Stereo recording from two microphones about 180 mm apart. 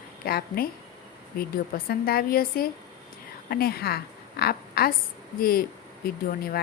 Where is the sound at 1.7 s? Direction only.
55° left (ahead or behind).